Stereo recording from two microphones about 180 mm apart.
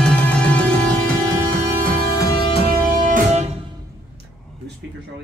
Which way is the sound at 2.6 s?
55° right (ahead or behind).